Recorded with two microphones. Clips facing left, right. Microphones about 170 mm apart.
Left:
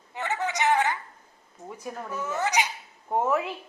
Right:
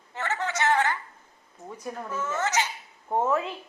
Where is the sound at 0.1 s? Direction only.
15° left (ahead or behind).